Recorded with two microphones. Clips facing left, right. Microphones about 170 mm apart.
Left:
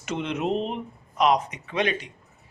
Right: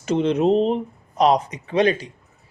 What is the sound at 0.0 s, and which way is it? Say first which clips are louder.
Speech: right 9 dB; 35° right (ahead or behind).